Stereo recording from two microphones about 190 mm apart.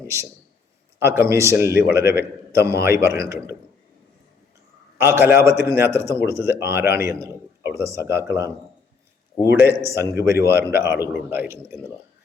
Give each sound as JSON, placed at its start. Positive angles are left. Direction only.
{"t": 0.9, "sound": "a man's voice", "side_deg": -15}
{"t": 4.9, "sound": "speech", "side_deg": -15}